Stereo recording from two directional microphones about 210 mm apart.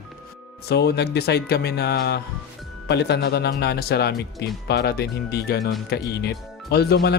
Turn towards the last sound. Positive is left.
turn(degrees=50)  # may be behind; listen again after turning